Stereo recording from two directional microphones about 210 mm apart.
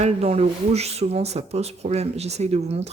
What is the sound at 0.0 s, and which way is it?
Speech, 30° right (ahead or behind).